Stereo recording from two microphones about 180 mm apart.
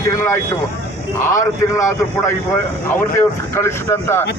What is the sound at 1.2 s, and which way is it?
A man's voice, 15° left (ahead or behind).